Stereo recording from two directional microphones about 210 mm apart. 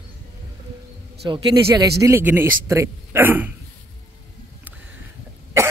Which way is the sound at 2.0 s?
10° right (ahead or behind).